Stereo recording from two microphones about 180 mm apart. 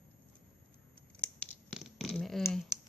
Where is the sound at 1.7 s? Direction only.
Centre (ahead or behind).